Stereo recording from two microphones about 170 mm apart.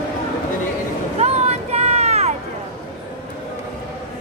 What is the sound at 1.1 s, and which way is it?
Vehicle, 40° right (ahead or behind).